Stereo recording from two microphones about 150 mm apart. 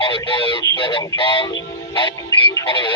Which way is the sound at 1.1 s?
35° left (ahead or behind).